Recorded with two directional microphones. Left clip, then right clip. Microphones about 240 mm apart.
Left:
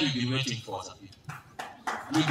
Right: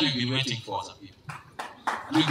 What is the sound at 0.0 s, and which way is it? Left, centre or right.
Speech, right.